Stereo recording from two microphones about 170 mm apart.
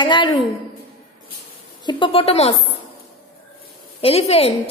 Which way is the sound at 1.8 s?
30° left (ahead or behind).